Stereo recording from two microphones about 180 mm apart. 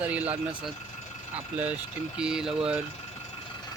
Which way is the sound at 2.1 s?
5° right (ahead or behind).